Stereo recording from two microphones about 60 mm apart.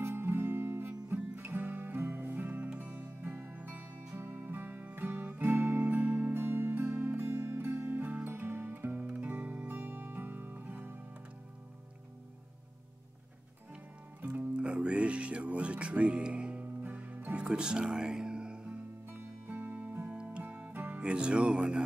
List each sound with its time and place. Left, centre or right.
0.0 s music: right; by 3.1 s centre
3.2 s music: right
6.3 s music: right
14.6 s music: centre
17.5 s music: centre
19.4 s music: right
21.0 s speech: centre